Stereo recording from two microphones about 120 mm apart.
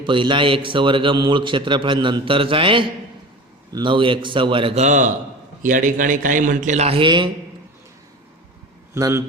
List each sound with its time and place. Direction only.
0.0 s a man's voice: 45° right (ahead or behind)
4.7 s a man's voice: 80° right; by 7.3 s 40° right (ahead or behind)
9.0 s a man's voice: 30° right (ahead or behind)